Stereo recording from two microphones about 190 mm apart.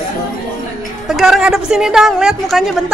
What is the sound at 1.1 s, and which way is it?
A woman's voice, centre (ahead or behind).